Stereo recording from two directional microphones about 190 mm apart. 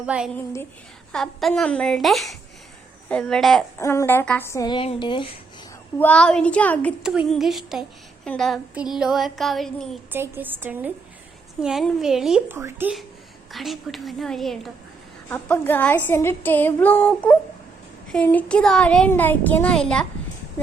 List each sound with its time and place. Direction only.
0.0 s a woman's voice: 5° right (ahead or behind)
3.8 s a sound: 15° left (ahead or behind)
6.0 s a sound: 5° left (ahead or behind)
7.0 s a woman's voice: 5° right (ahead or behind)
10.1 s a woman's voice: 10° right (ahead or behind)
12.5 s a woman's voice: 15° right (ahead or behind)
13.5 s a woman's voice: centre (ahead or behind)
15.3 s a sound: 10° left (ahead or behind)
18.1 s a woman's voice: 10° left (ahead or behind)